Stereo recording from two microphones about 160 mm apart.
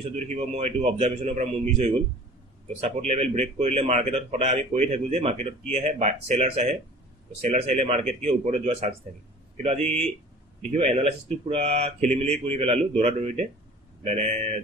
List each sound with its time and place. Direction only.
0.1 s a man's voice: 45° right (ahead or behind)
10.7 s a man's voice: 40° right (ahead or behind)